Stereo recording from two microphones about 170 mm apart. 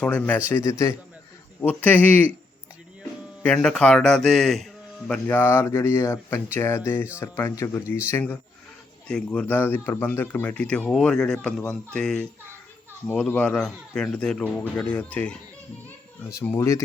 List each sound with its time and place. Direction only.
0.0 s a man's voice: 10° left (ahead or behind)
3.4 s a man's voice: 5° left (ahead or behind)